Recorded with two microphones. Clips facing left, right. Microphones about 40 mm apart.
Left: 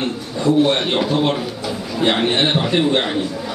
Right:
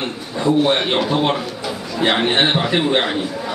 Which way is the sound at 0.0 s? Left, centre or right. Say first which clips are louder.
Left 1 dB; centre.